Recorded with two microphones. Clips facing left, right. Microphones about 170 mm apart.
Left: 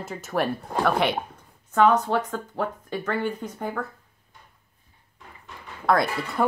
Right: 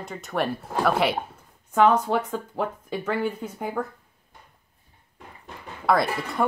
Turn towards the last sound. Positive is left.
turn(degrees=0)  # may be behind; listen again after turning